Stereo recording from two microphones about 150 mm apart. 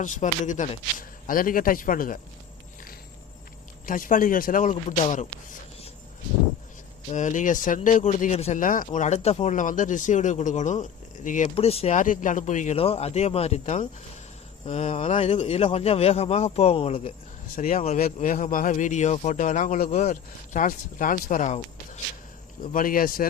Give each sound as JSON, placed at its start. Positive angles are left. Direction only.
{"t": 0.0, "sound": "a man's voice", "side_deg": 55}
{"t": 0.9, "sound": "a man's voice", "side_deg": 65}
{"t": 3.8, "sound": "a man's voice", "side_deg": 65}
{"t": 7.1, "sound": "a man's voice", "side_deg": 55}
{"t": 11.5, "sound": "speech", "side_deg": 40}
{"t": 11.9, "sound": "a man's voice", "side_deg": 60}
{"t": 17.5, "sound": "a man's voice", "side_deg": 60}
{"t": 22.6, "sound": "speech", "side_deg": 70}